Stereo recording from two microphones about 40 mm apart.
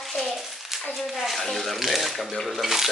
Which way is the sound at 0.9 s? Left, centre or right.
Centre.